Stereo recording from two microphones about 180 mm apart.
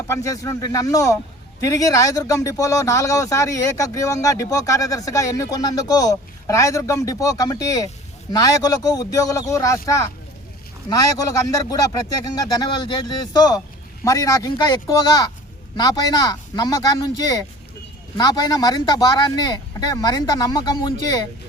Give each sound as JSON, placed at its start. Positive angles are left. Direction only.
{"t": 0.1, "sound": "speech", "side_deg": 15}